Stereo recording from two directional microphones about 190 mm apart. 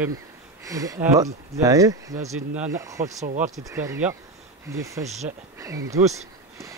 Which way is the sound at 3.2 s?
40° right (ahead or behind).